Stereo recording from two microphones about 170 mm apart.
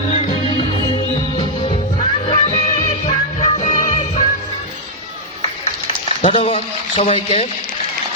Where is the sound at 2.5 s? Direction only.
20° left (ahead or behind).